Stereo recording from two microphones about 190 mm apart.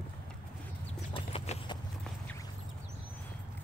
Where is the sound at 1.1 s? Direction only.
30° left (ahead or behind).